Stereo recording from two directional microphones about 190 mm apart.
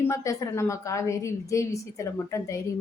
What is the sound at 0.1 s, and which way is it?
A woman's voice, 15° left (ahead or behind).